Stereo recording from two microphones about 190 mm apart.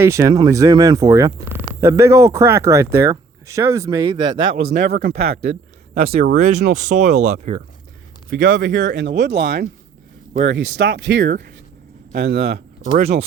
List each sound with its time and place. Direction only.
0.0 s speech: 15° right (ahead or behind)
4.7 s speech: 50° right (ahead or behind)
5.9 s speech: 35° right (ahead or behind)
8.3 s speech: 50° right (ahead or behind)
8.6 s speech: 65° right (ahead or behind)
10.4 s speech: 70° right (ahead or behind)